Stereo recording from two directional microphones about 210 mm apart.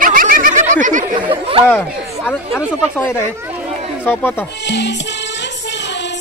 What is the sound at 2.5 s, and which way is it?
Speech, 10° left (ahead or behind).